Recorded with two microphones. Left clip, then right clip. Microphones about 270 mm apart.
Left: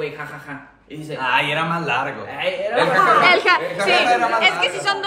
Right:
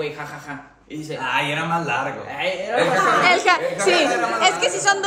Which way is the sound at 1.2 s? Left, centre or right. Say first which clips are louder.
Left 3 dB; centre.